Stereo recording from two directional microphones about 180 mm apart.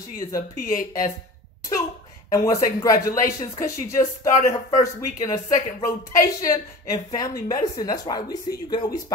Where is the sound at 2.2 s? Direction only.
20° left (ahead or behind).